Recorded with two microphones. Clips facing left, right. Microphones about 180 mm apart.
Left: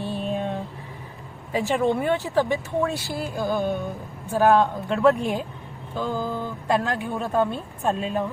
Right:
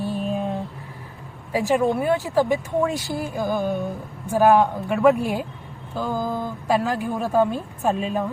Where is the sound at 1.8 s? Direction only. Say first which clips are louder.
Right 1 dB; 5° right (ahead or behind).